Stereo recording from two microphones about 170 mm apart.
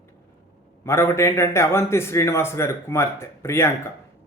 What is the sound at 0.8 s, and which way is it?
A man's voice, 15° left (ahead or behind).